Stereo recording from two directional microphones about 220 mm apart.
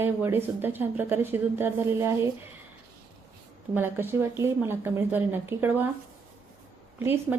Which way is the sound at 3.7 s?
10° right (ahead or behind).